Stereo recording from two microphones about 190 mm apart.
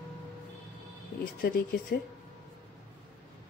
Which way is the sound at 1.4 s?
50° left (ahead or behind).